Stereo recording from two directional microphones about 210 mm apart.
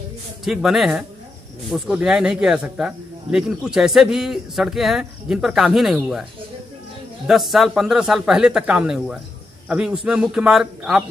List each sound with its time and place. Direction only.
0.5 s speech: centre (ahead or behind)
7.2 s speech: centre (ahead or behind)